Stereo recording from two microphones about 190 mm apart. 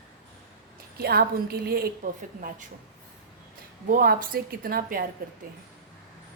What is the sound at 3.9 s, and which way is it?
A woman's voice, 45° right (ahead or behind).